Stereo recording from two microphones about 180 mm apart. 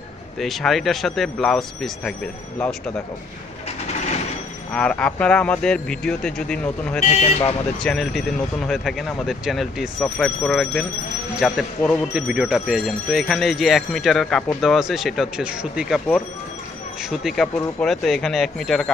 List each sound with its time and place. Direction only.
0.4 s speech: centre (ahead or behind)
4.7 s speech: 5° left (ahead or behind)
7.0 s speech: 35° left (ahead or behind)
7.8 s speech: centre (ahead or behind)